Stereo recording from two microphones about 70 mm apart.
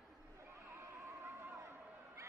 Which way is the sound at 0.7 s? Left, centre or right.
Right.